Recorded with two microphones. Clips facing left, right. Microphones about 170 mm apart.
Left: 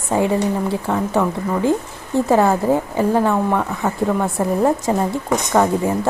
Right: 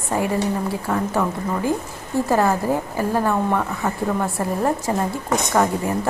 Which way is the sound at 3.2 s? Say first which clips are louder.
Left 3 dB; 5° left (ahead or behind).